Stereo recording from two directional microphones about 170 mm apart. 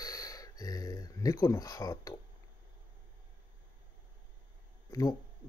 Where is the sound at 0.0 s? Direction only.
20° left (ahead or behind).